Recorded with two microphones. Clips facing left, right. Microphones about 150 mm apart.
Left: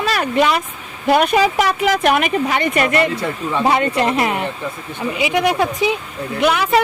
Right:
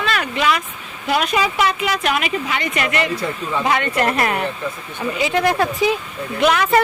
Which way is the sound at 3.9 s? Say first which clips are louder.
Left 1 dB; 20° left (ahead or behind).